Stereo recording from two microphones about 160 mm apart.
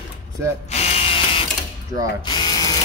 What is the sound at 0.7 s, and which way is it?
Ratchet, 40° left (ahead or behind).